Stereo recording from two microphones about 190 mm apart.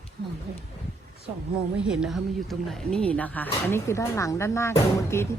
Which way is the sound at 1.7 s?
5° right (ahead or behind).